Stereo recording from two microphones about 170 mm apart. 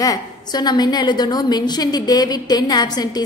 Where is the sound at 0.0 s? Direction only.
20° left (ahead or behind).